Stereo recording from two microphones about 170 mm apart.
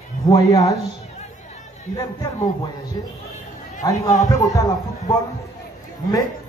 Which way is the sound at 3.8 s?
20° left (ahead or behind).